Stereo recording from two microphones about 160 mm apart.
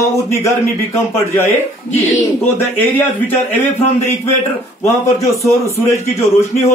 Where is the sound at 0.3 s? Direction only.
15° left (ahead or behind).